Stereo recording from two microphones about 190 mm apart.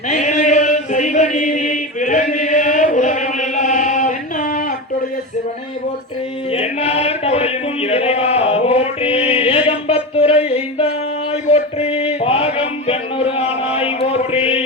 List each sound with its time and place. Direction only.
0.1 s chant: 40° left (ahead or behind)
6.5 s chant: 30° left (ahead or behind)
11.5 s a sound: 30° left (ahead or behind)